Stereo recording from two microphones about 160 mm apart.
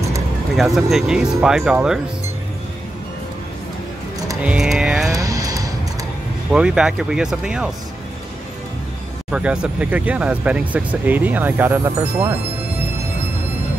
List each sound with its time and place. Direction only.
0.6 s speech: centre (ahead or behind)
4.4 s music: 5° right (ahead or behind)
5.1 s music: 20° right (ahead or behind)
6.5 s speech: 5° right (ahead or behind)
9.3 s speech: 5° right (ahead or behind)